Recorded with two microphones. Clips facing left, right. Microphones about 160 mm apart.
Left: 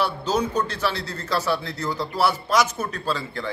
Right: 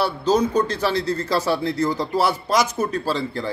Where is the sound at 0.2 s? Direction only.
10° right (ahead or behind).